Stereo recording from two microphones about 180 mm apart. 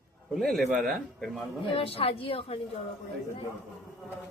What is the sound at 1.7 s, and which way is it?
Speech, 30° left (ahead or behind).